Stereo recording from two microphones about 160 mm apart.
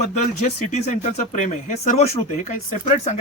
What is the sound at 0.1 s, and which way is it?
Speech, 50° left (ahead or behind).